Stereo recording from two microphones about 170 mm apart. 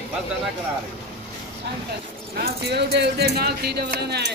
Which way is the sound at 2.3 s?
70° right (ahead or behind).